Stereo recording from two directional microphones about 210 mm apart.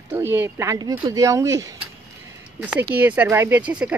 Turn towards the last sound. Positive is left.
turn(degrees=-5)  # may be behind; listen again after turning